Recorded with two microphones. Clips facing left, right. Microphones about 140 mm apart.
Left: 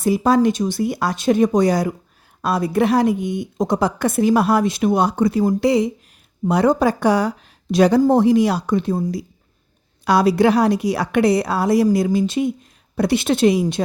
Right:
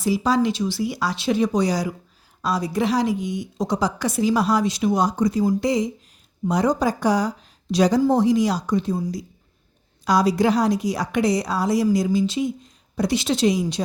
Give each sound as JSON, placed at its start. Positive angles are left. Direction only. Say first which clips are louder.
{"t": 0.0, "sound": "a woman's voice", "louder": "left 4 dB", "side_deg": 55}